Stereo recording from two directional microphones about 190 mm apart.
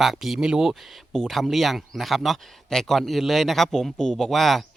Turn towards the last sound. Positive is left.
turn(degrees=0)  # may be behind; listen again after turning